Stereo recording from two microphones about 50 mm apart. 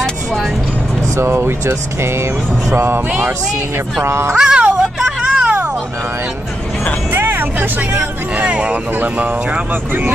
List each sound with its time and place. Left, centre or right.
1.1 s speech: right
4.0 s speech: right
4.4 s a sound: centre
7.2 s music: right
8.4 s speech: right